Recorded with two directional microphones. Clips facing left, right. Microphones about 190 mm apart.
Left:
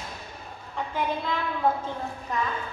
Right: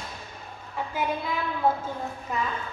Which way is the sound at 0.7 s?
5° right (ahead or behind).